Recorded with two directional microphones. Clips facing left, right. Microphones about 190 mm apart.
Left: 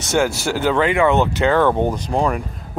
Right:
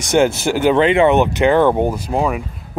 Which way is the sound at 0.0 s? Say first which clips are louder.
Right 4 dB; 20° right (ahead or behind).